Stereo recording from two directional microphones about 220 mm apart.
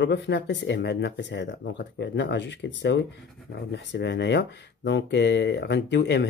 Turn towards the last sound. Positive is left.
turn(degrees=50)  # may be behind; listen again after turning